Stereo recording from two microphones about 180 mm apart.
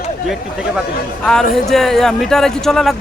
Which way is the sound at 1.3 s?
Centre (ahead or behind).